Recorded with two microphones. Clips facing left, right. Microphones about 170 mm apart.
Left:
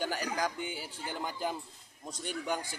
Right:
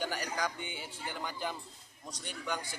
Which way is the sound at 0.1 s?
40° left (ahead or behind).